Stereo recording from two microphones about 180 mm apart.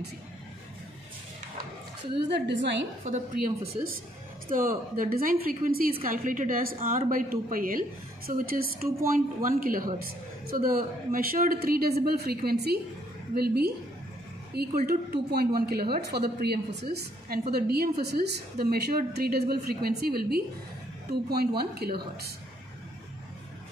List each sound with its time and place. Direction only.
2.3 s a woman's voice: 75° right (ahead or behind)
3.1 s a woman's voice: 50° right (ahead or behind)